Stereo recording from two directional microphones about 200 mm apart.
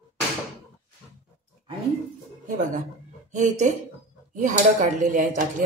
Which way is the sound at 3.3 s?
35° right (ahead or behind).